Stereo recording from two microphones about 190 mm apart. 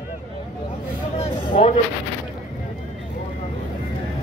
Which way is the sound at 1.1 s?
35° left (ahead or behind).